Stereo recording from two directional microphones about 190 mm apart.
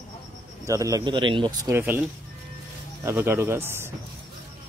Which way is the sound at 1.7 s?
10° right (ahead or behind).